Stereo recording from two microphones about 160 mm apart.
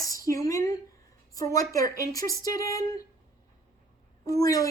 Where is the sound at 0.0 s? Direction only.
20° left (ahead or behind).